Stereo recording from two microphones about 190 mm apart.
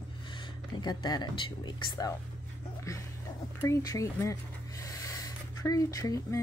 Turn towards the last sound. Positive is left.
turn(degrees=20)  # may be behind; listen again after turning